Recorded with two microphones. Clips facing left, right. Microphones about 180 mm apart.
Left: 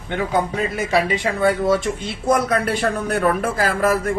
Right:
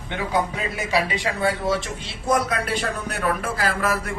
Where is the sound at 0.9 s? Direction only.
50° left (ahead or behind).